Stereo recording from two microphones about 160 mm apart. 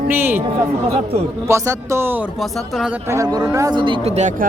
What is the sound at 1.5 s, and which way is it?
Speech, 15° right (ahead or behind).